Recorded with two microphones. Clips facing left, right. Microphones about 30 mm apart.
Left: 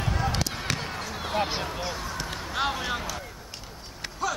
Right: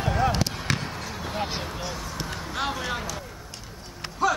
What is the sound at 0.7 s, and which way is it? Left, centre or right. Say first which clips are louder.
Basketball bounce: even; centre.